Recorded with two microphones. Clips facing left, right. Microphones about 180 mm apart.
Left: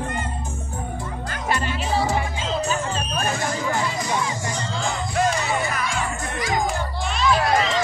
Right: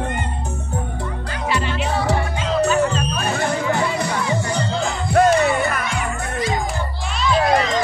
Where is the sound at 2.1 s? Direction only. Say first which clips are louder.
Right 4 dB; 65° right (ahead or behind).